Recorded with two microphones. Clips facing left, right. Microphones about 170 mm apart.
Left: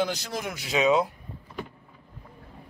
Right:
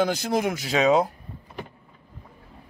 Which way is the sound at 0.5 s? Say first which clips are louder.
Even; 40° right (ahead or behind).